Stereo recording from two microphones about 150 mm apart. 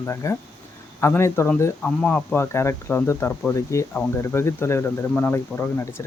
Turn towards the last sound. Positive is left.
turn(degrees=15)  # may be behind; listen again after turning